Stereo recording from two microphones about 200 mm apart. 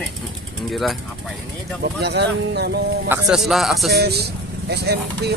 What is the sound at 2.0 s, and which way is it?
Speech, 55° right (ahead or behind).